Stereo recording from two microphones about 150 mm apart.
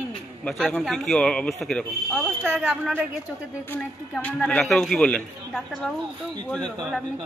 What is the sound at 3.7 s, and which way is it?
A man's voice, 10° left (ahead or behind).